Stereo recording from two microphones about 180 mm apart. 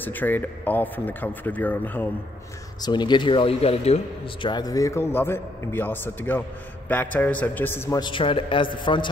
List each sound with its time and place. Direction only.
0.0 s speech: 10° left (ahead or behind)
2.8 s speech: 25° left (ahead or behind)
8.0 s speech: 30° left (ahead or behind)